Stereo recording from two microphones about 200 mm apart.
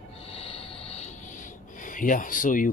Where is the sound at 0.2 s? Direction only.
30° left (ahead or behind).